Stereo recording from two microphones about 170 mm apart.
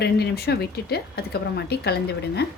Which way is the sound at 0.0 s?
70° left (ahead or behind).